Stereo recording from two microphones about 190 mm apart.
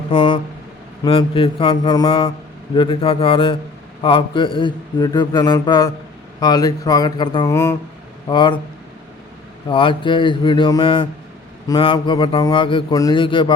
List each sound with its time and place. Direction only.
0.1 s a man's voice: 25° left (ahead or behind)
8.3 s a man's voice: 25° left (ahead or behind)
9.6 s a man's voice: 25° left (ahead or behind)